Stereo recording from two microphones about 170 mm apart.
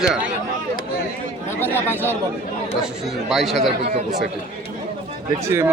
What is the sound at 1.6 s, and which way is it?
Speech, 10° left (ahead or behind).